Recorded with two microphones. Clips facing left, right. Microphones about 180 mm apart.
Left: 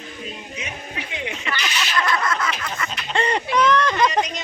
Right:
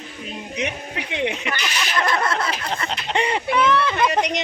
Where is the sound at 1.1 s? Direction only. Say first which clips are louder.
Right 9 dB; 70° right (ahead or behind).